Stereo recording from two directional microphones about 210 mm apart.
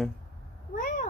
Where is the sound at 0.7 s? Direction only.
40° left (ahead or behind).